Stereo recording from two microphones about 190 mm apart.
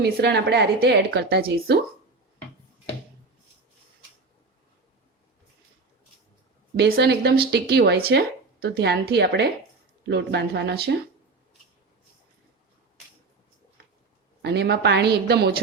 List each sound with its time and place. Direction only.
0.0 s a woman's voice: 60° right (ahead or behind)
6.7 s a woman's voice: 55° right (ahead or behind)
14.4 s a woman's voice: 60° right (ahead or behind)